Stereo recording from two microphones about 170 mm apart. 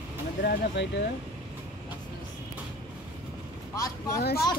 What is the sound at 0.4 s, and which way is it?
Speech, 60° left (ahead or behind).